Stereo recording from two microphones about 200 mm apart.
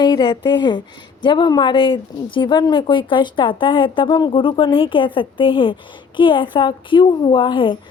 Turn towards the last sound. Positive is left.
turn(degrees=25)  # may be behind; listen again after turning